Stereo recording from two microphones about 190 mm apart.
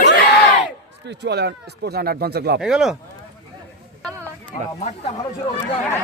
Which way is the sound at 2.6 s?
5° right (ahead or behind).